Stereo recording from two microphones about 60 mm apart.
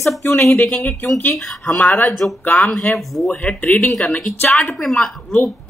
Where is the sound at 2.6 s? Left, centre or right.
Centre.